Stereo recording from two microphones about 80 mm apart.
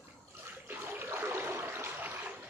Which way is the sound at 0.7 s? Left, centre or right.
Right.